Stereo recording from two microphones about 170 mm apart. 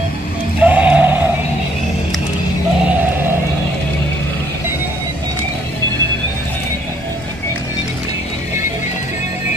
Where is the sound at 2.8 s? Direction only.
10° right (ahead or behind).